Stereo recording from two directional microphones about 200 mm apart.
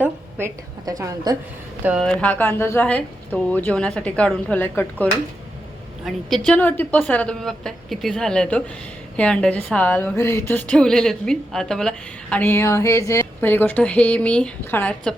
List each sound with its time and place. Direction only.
0.0 s a woman's voice: 10° right (ahead or behind)
1.8 s a woman's voice: 5° right (ahead or behind)
6.1 s a woman's voice: 5° left (ahead or behind)